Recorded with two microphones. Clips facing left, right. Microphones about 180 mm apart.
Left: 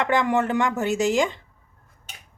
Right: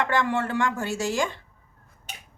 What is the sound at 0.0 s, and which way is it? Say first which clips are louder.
Speech: left 3 dB; 20° left (ahead or behind).